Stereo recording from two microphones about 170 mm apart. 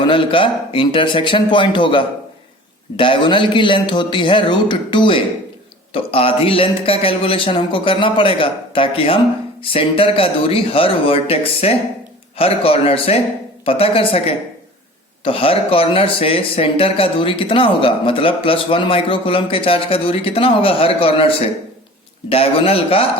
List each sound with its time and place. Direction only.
0.0 s speech: 30° left (ahead or behind)